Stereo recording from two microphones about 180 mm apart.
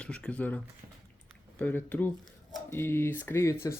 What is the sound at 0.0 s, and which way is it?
Speech, 5° left (ahead or behind).